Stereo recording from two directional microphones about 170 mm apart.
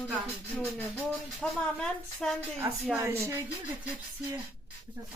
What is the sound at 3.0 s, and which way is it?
Speech, 15° right (ahead or behind).